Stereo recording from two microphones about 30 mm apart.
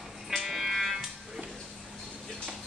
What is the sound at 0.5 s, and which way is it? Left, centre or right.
Music, centre.